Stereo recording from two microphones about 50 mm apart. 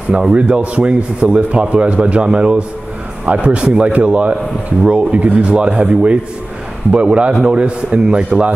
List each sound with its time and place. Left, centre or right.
0.1 s speech: right